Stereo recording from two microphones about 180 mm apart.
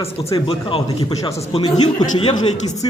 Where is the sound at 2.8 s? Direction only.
30° left (ahead or behind).